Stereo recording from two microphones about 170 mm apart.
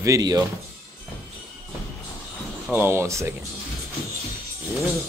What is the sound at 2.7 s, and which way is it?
Speech, 15° right (ahead or behind).